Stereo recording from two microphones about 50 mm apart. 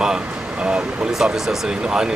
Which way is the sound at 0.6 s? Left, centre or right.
Centre.